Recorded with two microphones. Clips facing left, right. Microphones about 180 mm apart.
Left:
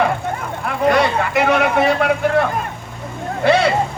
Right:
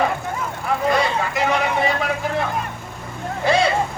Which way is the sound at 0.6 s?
65° left (ahead or behind).